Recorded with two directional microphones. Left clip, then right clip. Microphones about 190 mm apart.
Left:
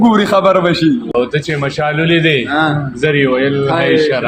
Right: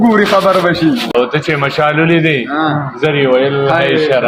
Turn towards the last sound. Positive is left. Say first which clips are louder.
# right 1 dB
turn(degrees=-30)  # may be behind; listen again after turning